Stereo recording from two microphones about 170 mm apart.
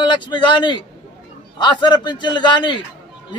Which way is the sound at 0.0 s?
25° left (ahead or behind).